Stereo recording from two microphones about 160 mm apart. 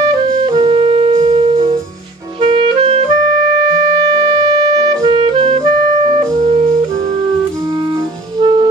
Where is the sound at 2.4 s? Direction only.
35° right (ahead or behind).